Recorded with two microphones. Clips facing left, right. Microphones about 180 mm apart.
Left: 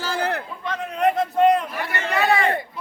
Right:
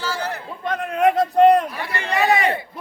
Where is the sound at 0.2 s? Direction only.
60° left (ahead or behind).